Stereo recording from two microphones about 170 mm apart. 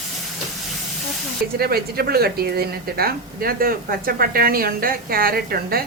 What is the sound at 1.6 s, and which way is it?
A woman's voice, 65° right (ahead or behind).